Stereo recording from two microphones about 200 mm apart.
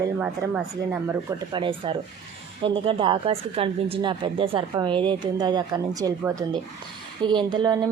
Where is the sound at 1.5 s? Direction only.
25° right (ahead or behind).